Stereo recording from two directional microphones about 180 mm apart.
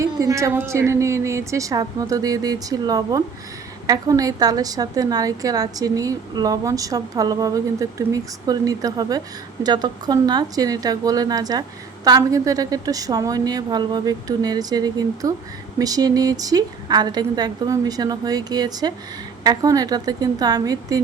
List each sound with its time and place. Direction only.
0.0 s a woman's voice: 15° right (ahead or behind)